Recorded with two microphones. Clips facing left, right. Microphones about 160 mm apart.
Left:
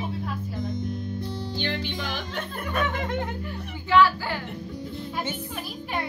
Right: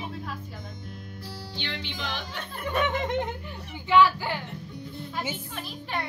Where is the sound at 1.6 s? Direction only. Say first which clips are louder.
Left 6 dB; 45° left (ahead or behind).